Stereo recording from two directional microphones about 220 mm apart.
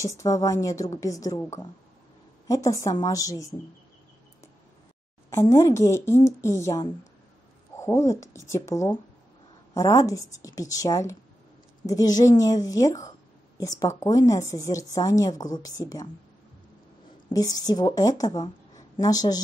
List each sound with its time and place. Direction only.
0.0 s speech: 15° left (ahead or behind)
5.3 s speech: 15° left (ahead or behind)
17.3 s speech: 15° left (ahead or behind)